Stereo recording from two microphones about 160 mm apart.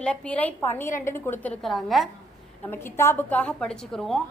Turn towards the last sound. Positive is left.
turn(degrees=5)  # may be behind; listen again after turning